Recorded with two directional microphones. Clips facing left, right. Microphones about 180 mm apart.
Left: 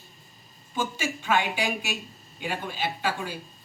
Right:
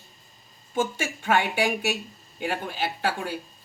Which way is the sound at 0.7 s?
55° right (ahead or behind).